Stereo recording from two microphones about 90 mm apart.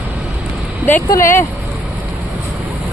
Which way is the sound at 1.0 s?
35° left (ahead or behind).